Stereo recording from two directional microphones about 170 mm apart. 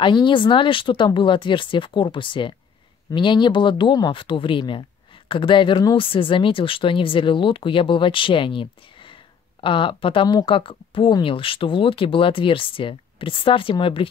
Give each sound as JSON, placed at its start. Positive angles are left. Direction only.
{"t": 0.0, "sound": "speech", "side_deg": 30}